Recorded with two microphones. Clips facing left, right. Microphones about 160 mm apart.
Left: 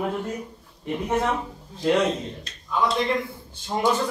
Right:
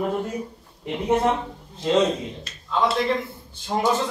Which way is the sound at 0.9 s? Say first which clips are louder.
Right 3 dB; 20° right (ahead or behind).